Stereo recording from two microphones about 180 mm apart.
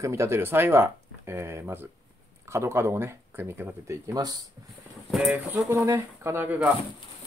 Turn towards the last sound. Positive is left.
turn(degrees=-10)  # may be behind; listen again after turning